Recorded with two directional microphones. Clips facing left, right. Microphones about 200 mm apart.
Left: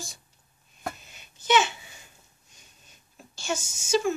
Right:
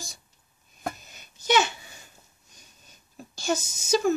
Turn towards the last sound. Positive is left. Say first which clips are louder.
# right 2 dB
turn(degrees=-40)  # may be behind; listen again after turning